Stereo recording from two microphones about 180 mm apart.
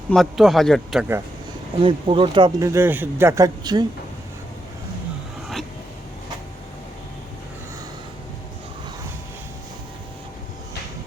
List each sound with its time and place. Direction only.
0.1 s speech: centre (ahead or behind)
1.8 s speech: 30° right (ahead or behind)